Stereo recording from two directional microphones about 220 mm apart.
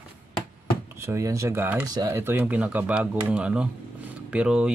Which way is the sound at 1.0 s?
15° right (ahead or behind).